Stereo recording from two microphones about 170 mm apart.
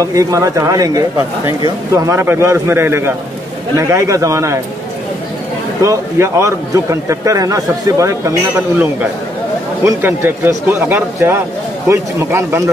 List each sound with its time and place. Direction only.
0.0 s speech: 20° right (ahead or behind)
5.8 s a man's voice: 15° right (ahead or behind)
9.8 s speech: 10° right (ahead or behind)